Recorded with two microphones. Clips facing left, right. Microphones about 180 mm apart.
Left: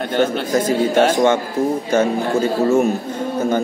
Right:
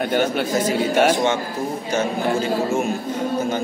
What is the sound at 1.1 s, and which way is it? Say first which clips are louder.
Speech: left 5 dB; 50° left (ahead or behind).